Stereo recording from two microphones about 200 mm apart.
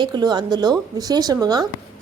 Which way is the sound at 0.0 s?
20° right (ahead or behind).